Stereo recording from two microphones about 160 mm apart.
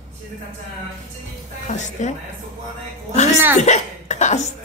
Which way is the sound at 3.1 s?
45° left (ahead or behind).